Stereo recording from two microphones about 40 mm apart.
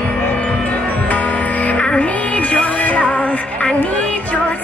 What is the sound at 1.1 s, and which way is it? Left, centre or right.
Music, left.